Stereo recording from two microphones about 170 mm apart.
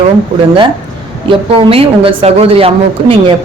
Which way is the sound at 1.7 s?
35° right (ahead or behind).